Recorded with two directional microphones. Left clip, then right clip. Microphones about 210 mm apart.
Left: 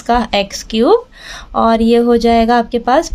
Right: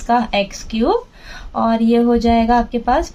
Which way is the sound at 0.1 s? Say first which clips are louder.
Left 3 dB; 45° left (ahead or behind).